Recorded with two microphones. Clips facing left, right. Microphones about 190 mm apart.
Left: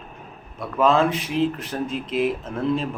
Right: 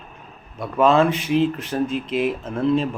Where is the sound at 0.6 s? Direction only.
Centre (ahead or behind).